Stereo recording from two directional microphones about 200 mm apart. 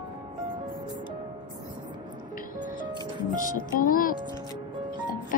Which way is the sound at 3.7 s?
45° left (ahead or behind).